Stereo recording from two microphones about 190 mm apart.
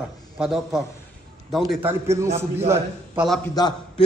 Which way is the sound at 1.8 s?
15° right (ahead or behind).